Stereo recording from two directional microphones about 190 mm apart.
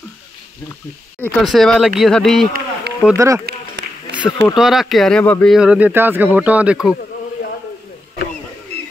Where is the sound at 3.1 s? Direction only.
15° right (ahead or behind).